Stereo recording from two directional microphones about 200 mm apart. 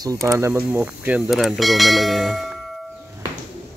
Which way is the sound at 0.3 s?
15° right (ahead or behind).